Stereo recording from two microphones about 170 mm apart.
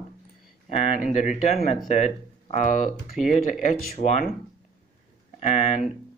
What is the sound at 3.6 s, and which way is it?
Speech, 40° left (ahead or behind).